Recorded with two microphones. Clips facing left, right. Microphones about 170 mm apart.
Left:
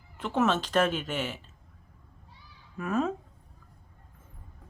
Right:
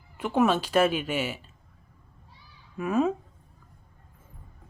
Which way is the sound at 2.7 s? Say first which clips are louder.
Right 4 dB; 10° right (ahead or behind).